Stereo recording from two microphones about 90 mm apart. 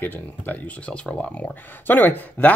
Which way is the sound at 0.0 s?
20° left (ahead or behind).